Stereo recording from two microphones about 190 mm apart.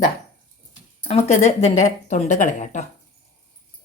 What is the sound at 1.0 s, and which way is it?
Speech, 35° left (ahead or behind).